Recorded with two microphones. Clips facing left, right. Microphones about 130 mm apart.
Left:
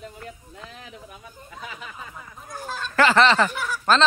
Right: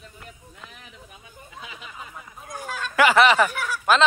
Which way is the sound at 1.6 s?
45° left (ahead or behind).